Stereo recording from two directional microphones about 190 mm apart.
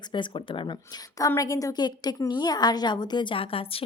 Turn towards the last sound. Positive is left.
turn(degrees=30)  # may be behind; listen again after turning